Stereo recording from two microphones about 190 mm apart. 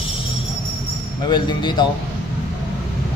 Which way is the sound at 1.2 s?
25° left (ahead or behind).